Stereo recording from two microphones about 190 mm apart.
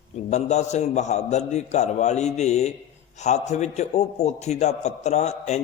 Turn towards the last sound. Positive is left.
turn(degrees=35)  # may be behind; listen again after turning